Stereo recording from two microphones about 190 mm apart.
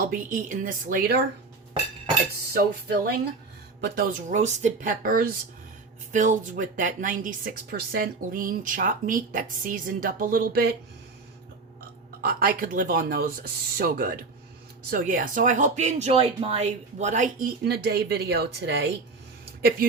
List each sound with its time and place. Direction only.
0.1 s speech: 45° right (ahead or behind)
2.5 s speech: 50° right (ahead or behind)
12.2 s speech: 50° right (ahead or behind)
17.6 s speech: 55° right (ahead or behind)